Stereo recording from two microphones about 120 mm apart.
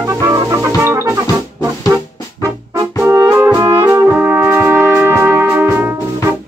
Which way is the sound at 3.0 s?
25° right (ahead or behind).